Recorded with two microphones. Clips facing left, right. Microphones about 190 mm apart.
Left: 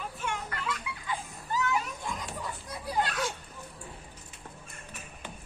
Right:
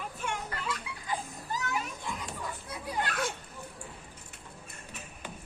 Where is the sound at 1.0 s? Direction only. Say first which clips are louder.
Right 2 dB; 40° right (ahead or behind).